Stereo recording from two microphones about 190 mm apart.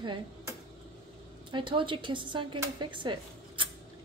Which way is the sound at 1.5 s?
25° right (ahead or behind).